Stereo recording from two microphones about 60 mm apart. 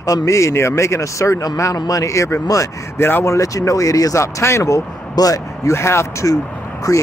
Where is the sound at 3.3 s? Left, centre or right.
Left.